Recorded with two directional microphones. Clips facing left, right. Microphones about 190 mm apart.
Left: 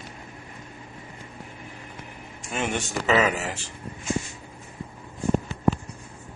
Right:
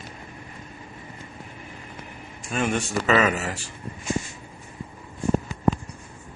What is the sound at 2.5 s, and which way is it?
Speech, 20° left (ahead or behind).